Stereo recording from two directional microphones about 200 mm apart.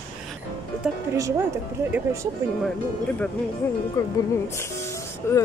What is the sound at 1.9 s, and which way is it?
Speech, 15° right (ahead or behind).